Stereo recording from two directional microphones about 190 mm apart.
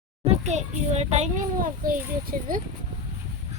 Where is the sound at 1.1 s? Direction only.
45° right (ahead or behind).